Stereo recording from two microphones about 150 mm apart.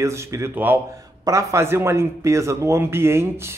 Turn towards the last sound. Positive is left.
turn(degrees=-15)  # may be behind; listen again after turning